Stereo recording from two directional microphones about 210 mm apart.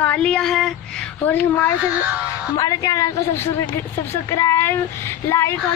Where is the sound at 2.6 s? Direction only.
15° left (ahead or behind).